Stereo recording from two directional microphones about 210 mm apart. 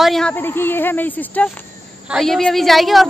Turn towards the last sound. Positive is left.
turn(degrees=0)  # may be behind; listen again after turning